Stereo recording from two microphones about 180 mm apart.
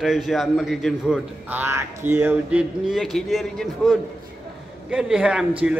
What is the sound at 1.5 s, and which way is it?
Speech, 15° right (ahead or behind).